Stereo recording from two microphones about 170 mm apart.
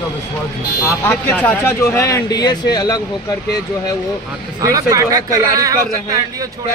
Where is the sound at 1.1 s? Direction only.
10° left (ahead or behind).